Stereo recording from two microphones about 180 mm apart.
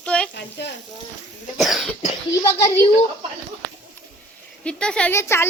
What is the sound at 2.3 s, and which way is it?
Speech, 15° left (ahead or behind).